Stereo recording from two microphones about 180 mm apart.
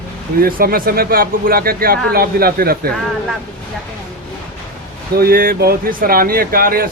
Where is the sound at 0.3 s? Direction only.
55° right (ahead or behind).